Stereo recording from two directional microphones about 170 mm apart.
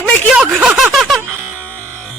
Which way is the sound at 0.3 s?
5° right (ahead or behind).